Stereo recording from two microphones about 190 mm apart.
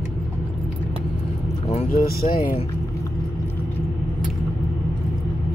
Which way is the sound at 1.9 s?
50° left (ahead or behind).